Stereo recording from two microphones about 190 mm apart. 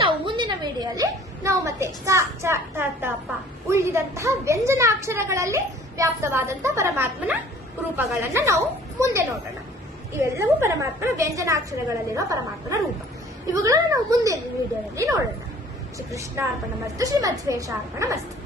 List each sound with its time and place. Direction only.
0.0 s a woman's voice: 25° right (ahead or behind)
16.4 s a woman's voice: 10° right (ahead or behind)